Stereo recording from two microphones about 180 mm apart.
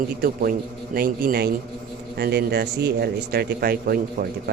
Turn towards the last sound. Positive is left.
turn(degrees=-55)  # may be behind; listen again after turning